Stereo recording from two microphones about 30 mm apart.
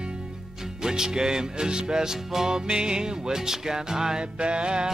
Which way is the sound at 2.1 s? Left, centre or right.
Centre.